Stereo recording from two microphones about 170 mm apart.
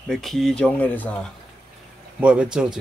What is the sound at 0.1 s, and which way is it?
Speech, centre (ahead or behind).